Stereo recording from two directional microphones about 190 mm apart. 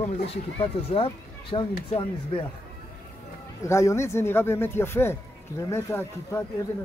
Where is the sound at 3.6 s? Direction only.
15° left (ahead or behind).